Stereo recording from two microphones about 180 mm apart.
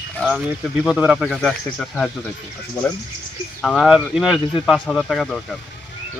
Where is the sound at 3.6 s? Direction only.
5° left (ahead or behind).